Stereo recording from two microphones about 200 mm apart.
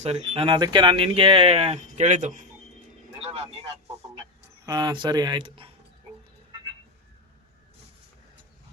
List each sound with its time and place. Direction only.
0.0 s speech: 30° right (ahead or behind)
3.2 s vehicle: 30° right (ahead or behind)
4.6 s speech: 20° right (ahead or behind)